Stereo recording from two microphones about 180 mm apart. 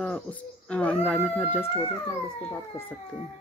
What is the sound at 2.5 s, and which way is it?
Speech, 10° left (ahead or behind).